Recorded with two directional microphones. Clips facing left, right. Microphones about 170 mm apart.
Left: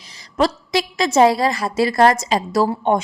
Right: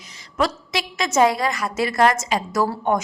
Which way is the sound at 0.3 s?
35° left (ahead or behind).